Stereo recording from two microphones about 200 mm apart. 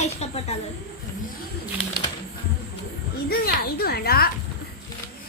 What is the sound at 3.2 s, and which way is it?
A child's voice, 50° left (ahead or behind).